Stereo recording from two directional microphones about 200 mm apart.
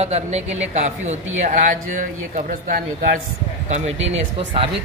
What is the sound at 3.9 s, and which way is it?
Speech, 70° right (ahead or behind).